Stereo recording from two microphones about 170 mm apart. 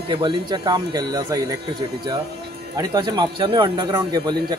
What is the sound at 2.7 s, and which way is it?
Speech, 20° right (ahead or behind).